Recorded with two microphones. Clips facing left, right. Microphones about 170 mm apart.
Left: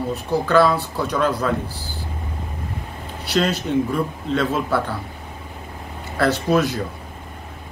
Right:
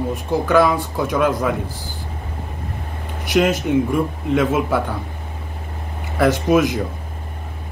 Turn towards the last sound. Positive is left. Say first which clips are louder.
# right 3 dB
turn(degrees=-15)  # may be behind; listen again after turning